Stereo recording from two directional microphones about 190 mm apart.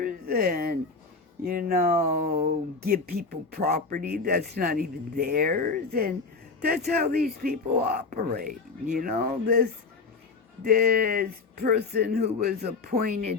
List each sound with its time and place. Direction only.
0.0 s speech: 50° right (ahead or behind)